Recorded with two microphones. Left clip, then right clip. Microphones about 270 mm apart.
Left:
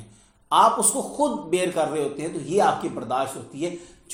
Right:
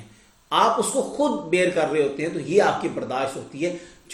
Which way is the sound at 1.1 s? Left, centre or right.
Left.